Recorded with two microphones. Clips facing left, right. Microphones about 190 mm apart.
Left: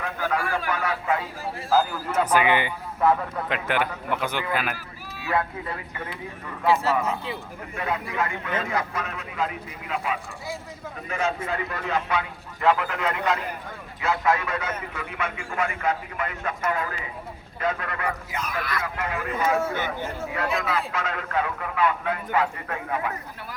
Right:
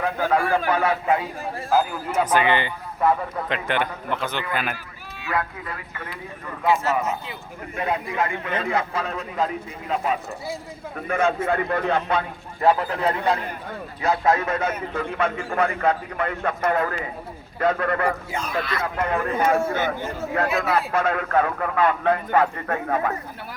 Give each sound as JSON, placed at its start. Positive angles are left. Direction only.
{"t": 0.0, "sound": "speech", "side_deg": -30}
{"t": 1.7, "sound": "a man's voice", "side_deg": -15}
{"t": 2.2, "sound": "a man's voice", "side_deg": 10}
{"t": 3.0, "sound": "speech", "side_deg": -5}
{"t": 3.7, "sound": "a man's voice", "side_deg": 5}
{"t": 5.2, "sound": "speech", "side_deg": 25}
{"t": 7.8, "sound": "speech", "side_deg": -25}
{"t": 11.1, "sound": "a man's voice", "side_deg": -55}
{"t": 12.6, "sound": "speech", "side_deg": -35}
{"t": 16.6, "sound": "a man's voice", "side_deg": -50}
{"t": 18.3, "sound": "speech", "side_deg": -30}
{"t": 18.8, "sound": "a man's voice", "side_deg": -50}
{"t": 19.5, "sound": "a man's voice", "side_deg": -45}